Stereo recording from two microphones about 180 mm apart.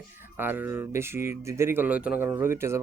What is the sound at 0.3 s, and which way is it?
Speech, 10° right (ahead or behind).